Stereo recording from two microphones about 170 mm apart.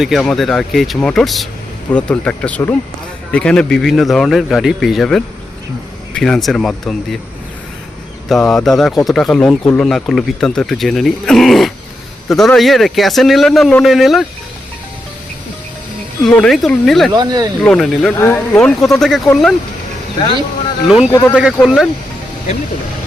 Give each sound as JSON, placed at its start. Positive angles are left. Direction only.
{"t": 0.0, "sound": "a man's voice", "side_deg": 0}
{"t": 8.3, "sound": "a man's voice", "side_deg": 0}
{"t": 16.2, "sound": "a man's voice", "side_deg": 5}
{"t": 17.1, "sound": "speech", "side_deg": -25}
{"t": 17.6, "sound": "a man's voice", "side_deg": 0}
{"t": 18.2, "sound": "speech", "side_deg": 15}
{"t": 18.5, "sound": "a man's voice", "side_deg": 0}
{"t": 21.1, "sound": "speech", "side_deg": 15}
{"t": 21.3, "sound": "a man's voice", "side_deg": -5}